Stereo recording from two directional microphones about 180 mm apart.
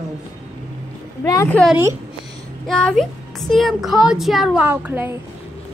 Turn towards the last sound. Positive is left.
turn(degrees=-10)  # may be behind; listen again after turning